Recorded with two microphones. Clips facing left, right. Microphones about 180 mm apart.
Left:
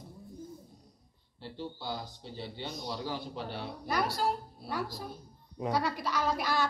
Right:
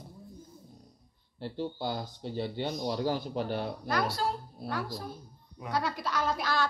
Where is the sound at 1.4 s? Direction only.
50° right (ahead or behind).